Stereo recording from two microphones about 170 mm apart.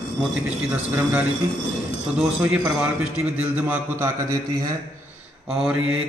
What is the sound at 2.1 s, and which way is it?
A man's voice, 5° right (ahead or behind).